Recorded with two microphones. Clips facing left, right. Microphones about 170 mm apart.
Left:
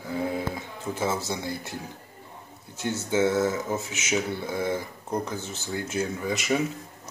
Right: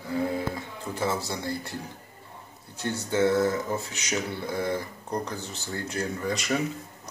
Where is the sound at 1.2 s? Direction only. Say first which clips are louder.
Even; 20° left (ahead or behind).